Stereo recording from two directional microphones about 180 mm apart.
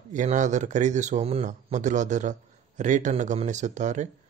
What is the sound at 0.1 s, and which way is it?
Speech, 45° right (ahead or behind).